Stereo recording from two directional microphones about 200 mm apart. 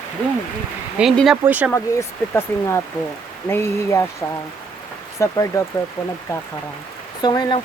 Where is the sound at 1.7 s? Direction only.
15° left (ahead or behind).